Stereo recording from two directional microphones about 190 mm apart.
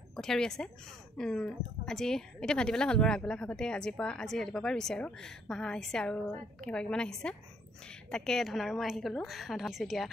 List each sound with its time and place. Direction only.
0.1 s speech: 5° left (ahead or behind)